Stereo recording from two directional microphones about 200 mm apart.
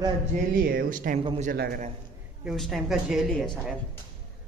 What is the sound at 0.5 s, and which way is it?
Speech, 45° right (ahead or behind).